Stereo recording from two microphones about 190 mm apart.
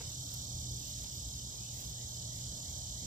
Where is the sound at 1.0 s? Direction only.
45° right (ahead or behind).